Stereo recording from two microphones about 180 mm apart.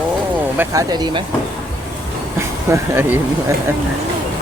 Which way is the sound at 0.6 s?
20° right (ahead or behind).